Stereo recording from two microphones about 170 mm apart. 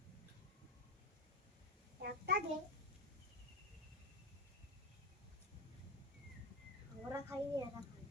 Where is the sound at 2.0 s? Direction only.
65° right (ahead or behind).